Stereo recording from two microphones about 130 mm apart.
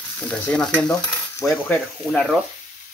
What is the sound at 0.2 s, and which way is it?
Stir, 5° left (ahead or behind).